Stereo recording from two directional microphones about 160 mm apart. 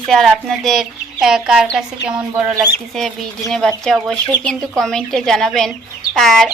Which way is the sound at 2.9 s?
Centre (ahead or behind).